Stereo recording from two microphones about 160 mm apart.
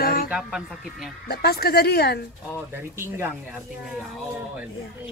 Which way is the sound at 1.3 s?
75° left (ahead or behind).